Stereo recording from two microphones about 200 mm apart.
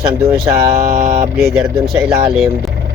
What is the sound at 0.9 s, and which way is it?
Mantra, 45° right (ahead or behind).